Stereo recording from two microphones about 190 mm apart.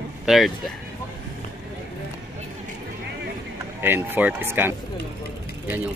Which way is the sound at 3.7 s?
10° right (ahead or behind).